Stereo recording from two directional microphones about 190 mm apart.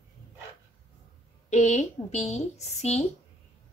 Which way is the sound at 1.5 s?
35° left (ahead or behind).